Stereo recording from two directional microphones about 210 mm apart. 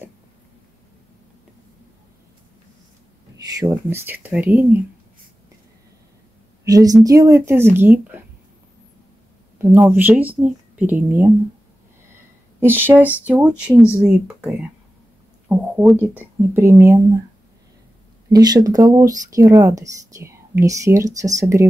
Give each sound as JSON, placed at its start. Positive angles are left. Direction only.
{"t": 3.5, "sound": "speech", "side_deg": -10}
{"t": 6.6, "sound": "a woman's voice", "side_deg": -15}
{"t": 9.6, "sound": "speech", "side_deg": -10}
{"t": 12.5, "sound": "speech", "side_deg": -10}
{"t": 18.3, "sound": "speech", "side_deg": -20}